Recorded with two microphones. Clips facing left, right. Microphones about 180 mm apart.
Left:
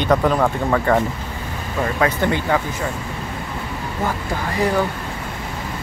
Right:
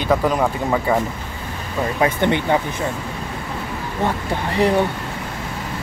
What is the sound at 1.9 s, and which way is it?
Speech, 25° right (ahead or behind).